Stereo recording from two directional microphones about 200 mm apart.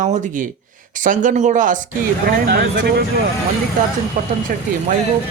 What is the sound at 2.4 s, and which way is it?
Speech, 55° right (ahead or behind).